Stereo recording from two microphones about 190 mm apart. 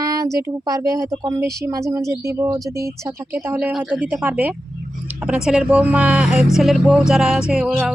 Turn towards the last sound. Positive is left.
turn(degrees=0)  # may be behind; listen again after turning